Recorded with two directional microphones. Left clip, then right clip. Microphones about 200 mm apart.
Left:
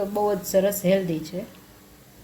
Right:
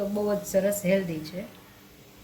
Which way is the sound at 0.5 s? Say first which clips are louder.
Left 3 dB; 45° left (ahead or behind).